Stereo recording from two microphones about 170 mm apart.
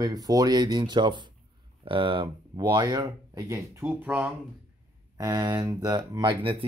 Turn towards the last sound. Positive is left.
turn(degrees=-30)  # may be behind; listen again after turning